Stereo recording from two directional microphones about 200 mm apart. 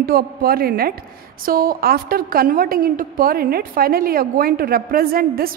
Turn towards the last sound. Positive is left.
turn(degrees=-50)  # may be behind; listen again after turning